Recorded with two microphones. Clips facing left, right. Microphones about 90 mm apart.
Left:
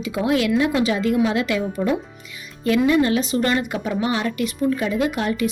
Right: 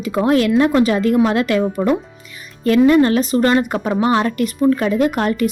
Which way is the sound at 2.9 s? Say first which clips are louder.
Right 5 dB; 45° right (ahead or behind).